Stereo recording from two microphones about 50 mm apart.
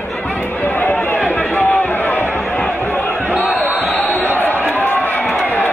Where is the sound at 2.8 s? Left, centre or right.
Left.